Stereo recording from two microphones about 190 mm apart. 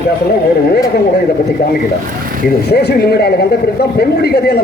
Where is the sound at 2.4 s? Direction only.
60° left (ahead or behind).